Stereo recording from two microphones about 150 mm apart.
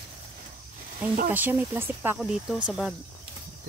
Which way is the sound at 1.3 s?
15° right (ahead or behind).